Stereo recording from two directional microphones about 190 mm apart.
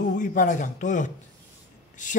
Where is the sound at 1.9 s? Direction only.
40° left (ahead or behind).